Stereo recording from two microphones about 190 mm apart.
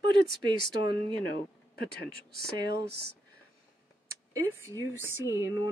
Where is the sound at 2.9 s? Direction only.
60° right (ahead or behind).